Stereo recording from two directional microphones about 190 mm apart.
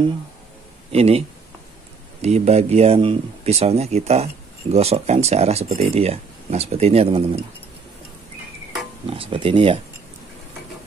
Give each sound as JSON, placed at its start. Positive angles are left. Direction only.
{"t": 0.9, "sound": "speech", "side_deg": -30}
{"t": 2.2, "sound": "speech", "side_deg": -35}
{"t": 9.0, "sound": "speech", "side_deg": -30}